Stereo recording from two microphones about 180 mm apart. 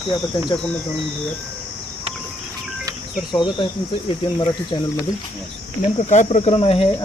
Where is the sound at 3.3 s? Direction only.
25° left (ahead or behind).